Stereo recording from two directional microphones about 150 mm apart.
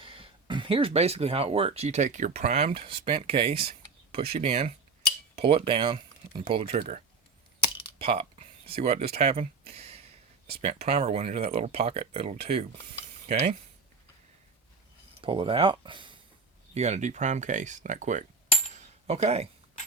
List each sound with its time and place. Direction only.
0.0 s speech: 35° right (ahead or behind)
6.6 s speech: 50° right (ahead or behind)
15.2 s speech: 35° right (ahead or behind)
16.7 s speech: 50° right (ahead or behind)
18.8 s a sound: 45° right (ahead or behind)